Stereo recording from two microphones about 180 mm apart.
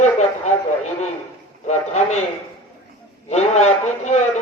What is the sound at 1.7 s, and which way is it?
Speech, 40° left (ahead or behind).